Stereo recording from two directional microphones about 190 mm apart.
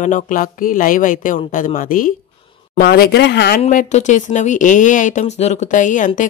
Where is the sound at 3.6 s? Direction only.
40° left (ahead or behind).